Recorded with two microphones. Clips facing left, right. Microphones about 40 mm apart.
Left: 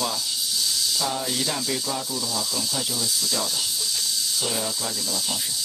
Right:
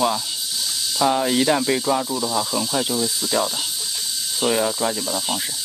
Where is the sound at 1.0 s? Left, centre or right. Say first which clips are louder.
Right 14 dB; right.